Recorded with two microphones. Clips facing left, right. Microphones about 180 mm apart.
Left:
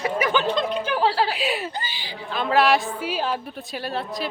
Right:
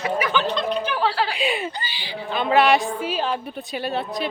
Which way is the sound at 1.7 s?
45° left (ahead or behind).